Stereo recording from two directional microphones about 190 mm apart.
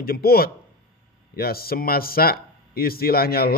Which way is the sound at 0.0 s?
55° left (ahead or behind).